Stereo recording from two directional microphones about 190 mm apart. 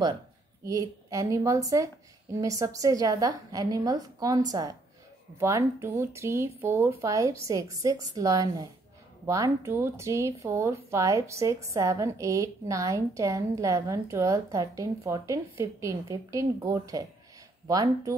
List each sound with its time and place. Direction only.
0.7 s a woman's voice: 15° right (ahead or behind)